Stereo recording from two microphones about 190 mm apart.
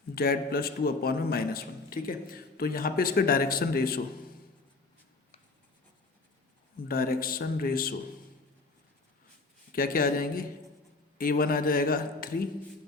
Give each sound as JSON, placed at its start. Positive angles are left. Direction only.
{"t": 0.1, "sound": "a man's voice", "side_deg": 55}
{"t": 6.8, "sound": "a man's voice", "side_deg": 50}
{"t": 9.7, "sound": "a man's voice", "side_deg": 50}